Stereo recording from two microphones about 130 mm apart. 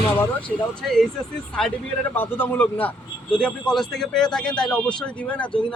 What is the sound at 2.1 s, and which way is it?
A man's voice, 15° left (ahead or behind).